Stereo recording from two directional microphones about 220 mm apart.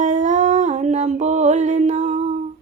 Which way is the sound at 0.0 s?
35° right (ahead or behind).